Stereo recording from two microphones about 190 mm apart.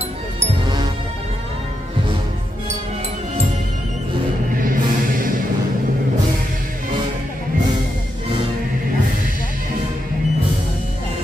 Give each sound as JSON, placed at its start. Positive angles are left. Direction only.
{"t": 4.6, "sound": "music", "side_deg": -45}